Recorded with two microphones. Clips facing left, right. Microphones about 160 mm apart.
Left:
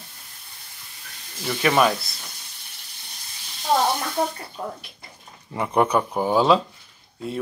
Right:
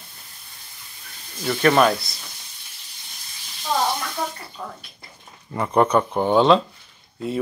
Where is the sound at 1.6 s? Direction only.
5° left (ahead or behind).